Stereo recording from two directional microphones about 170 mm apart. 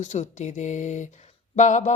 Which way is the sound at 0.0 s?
45° left (ahead or behind).